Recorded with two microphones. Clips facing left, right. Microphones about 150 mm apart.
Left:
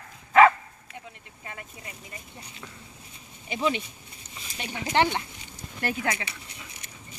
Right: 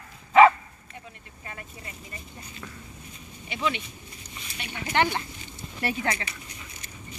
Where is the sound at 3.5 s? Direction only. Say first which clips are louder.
Left 2 dB; 40° left (ahead or behind).